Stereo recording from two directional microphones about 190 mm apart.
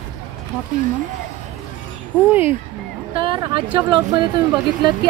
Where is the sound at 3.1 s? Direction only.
25° right (ahead or behind).